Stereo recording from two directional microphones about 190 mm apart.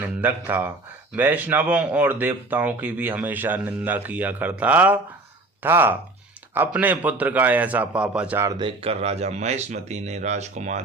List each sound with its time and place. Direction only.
0.0 s a man's voice: 10° right (ahead or behind); by 10.8 s 35° right (ahead or behind)